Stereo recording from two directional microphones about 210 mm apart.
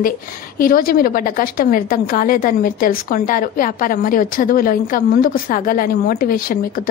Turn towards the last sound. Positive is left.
turn(degrees=45)  # may be behind; listen again after turning